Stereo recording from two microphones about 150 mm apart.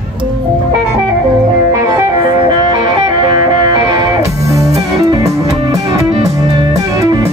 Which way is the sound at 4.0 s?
20° right (ahead or behind).